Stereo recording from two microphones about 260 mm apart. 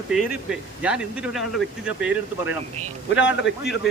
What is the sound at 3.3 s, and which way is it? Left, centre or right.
Speech, left.